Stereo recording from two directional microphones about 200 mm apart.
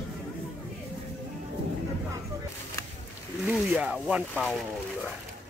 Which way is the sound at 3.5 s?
5° right (ahead or behind).